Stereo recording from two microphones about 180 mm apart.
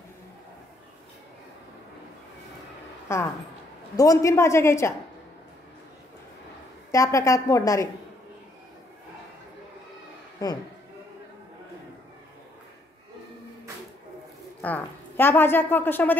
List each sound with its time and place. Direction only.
3.1 s a woman's voice: 15° left (ahead or behind)
6.9 s a woman's voice: 15° left (ahead or behind)
10.4 s speech: 20° left (ahead or behind)
14.6 s a woman's voice: 10° left (ahead or behind)